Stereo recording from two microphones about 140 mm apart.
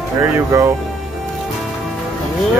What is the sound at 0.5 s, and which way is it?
Speech, 20° right (ahead or behind).